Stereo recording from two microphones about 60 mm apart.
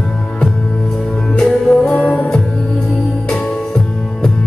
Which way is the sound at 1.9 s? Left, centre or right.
Centre.